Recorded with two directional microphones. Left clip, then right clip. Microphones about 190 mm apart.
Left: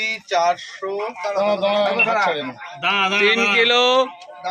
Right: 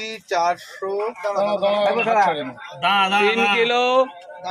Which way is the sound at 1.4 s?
30° left (ahead or behind).